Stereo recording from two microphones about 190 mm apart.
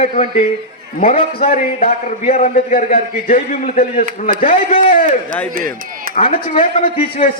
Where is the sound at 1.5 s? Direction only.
40° left (ahead or behind).